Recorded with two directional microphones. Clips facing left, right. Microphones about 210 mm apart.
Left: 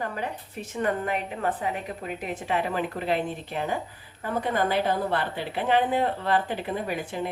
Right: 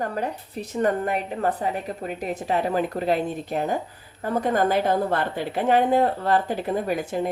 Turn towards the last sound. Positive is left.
turn(degrees=-45)  # may be behind; listen again after turning